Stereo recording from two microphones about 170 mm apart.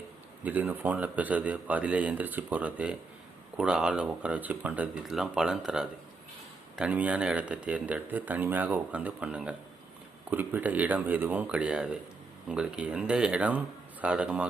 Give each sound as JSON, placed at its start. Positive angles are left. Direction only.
{"t": 0.4, "sound": "speech", "side_deg": -10}